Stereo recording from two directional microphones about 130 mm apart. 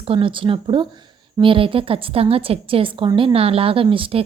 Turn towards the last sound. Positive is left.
turn(degrees=-45)  # may be behind; listen again after turning